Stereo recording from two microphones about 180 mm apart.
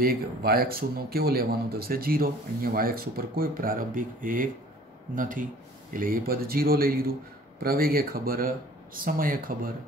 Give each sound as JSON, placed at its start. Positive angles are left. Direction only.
{"t": 0.0, "sound": "speech", "side_deg": -55}